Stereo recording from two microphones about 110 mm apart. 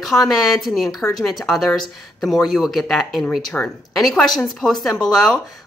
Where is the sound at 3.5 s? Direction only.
10° left (ahead or behind).